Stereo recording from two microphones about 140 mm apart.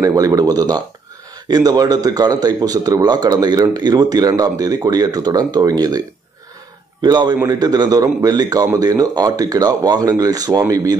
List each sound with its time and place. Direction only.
0.0 s speech: 25° right (ahead or behind)